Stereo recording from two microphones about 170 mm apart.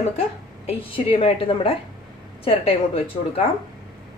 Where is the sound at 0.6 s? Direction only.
35° left (ahead or behind).